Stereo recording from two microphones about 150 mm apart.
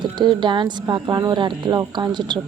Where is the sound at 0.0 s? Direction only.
30° right (ahead or behind).